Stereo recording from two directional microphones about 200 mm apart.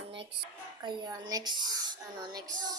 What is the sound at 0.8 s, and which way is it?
Speech, 20° right (ahead or behind).